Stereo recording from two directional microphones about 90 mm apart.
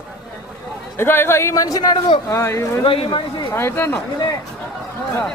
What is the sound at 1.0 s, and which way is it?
Speech, 25° left (ahead or behind).